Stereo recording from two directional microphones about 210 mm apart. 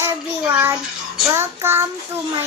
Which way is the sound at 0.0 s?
10° right (ahead or behind).